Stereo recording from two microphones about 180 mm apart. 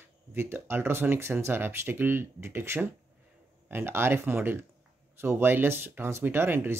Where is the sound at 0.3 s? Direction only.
15° right (ahead or behind).